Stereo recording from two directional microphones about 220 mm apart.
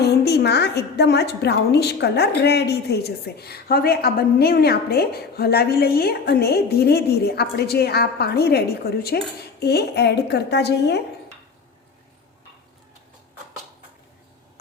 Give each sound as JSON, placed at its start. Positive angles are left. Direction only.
{"t": 0.0, "sound": "a woman's voice", "side_deg": 50}